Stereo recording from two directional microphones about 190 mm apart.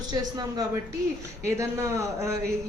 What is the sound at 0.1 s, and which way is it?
A woman's voice, 20° right (ahead or behind).